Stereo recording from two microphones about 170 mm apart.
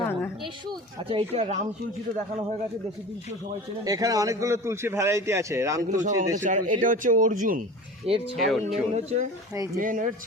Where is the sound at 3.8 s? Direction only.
20° right (ahead or behind).